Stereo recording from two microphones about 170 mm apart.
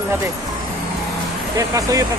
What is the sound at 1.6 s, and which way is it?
Speech, 20° right (ahead or behind).